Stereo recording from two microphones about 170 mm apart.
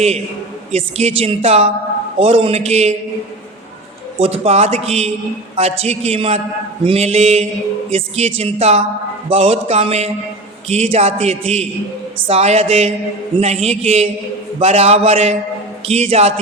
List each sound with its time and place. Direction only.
0.7 s a man's voice: 35° right (ahead or behind)
4.2 s a man's voice: 40° right (ahead or behind)